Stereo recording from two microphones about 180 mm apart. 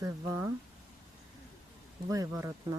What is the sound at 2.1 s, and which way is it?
Speech, 15° right (ahead or behind).